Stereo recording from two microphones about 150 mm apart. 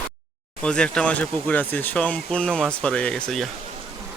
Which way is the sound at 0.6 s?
5° left (ahead or behind).